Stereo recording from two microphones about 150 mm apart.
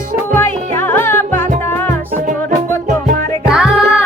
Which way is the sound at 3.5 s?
5° right (ahead or behind).